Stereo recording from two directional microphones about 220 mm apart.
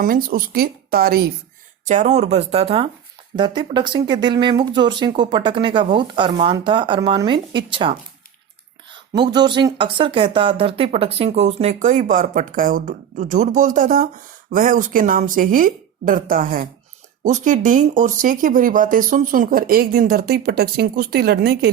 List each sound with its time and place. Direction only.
0.0 s speech: 40° right (ahead or behind)
1.8 s speech: 35° right (ahead or behind)
9.1 s speech: 20° right (ahead or behind); by 21.7 s 45° right (ahead or behind)